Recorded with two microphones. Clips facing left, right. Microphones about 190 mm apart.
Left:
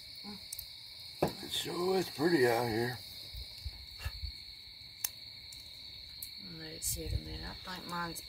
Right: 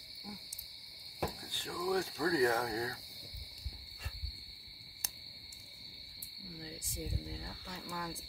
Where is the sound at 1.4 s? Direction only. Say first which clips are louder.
Left 4 dB; 20° left (ahead or behind).